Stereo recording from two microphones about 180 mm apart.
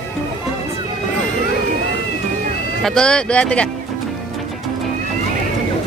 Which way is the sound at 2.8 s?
5° left (ahead or behind).